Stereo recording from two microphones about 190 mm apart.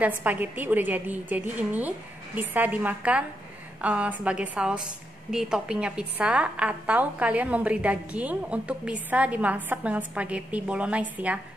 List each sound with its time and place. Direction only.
0.0 s a woman's voice: 10° right (ahead or behind)